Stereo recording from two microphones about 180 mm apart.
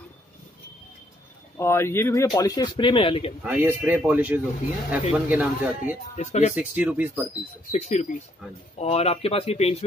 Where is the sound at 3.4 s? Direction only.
10° right (ahead or behind).